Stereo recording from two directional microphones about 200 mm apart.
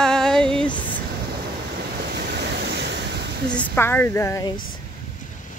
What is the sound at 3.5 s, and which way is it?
Speech, 10° left (ahead or behind).